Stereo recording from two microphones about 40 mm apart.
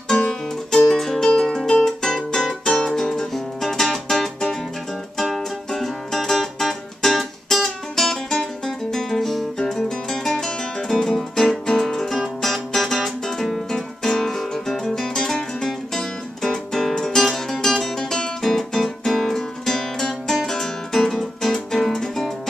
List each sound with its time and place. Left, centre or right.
0.1 s music: centre
2.9 s music: centre